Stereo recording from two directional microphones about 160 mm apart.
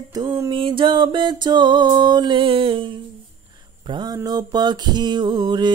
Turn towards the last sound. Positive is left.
turn(degrees=-25)  # may be behind; listen again after turning